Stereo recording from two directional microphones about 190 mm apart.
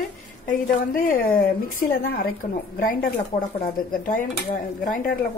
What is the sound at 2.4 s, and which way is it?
A woman's voice, 40° left (ahead or behind).